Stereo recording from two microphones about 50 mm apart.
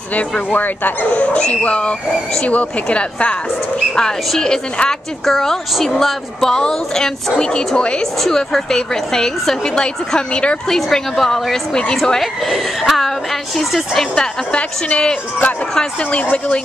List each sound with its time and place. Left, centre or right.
0.5 s speech: left
1.2 s speech: left
4.4 s a woman's voice: centre
8.2 s a woman's voice: centre
10.7 s a woman's voice: centre
14.1 s a woman's voice: centre